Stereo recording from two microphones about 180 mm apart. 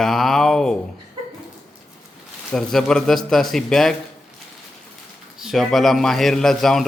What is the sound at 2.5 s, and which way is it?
A man's voice, 5° left (ahead or behind).